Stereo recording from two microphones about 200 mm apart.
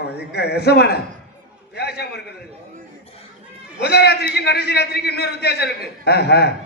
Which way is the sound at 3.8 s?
55° left (ahead or behind).